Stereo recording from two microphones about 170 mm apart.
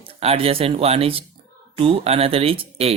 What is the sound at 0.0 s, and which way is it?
Speech, 35° right (ahead or behind).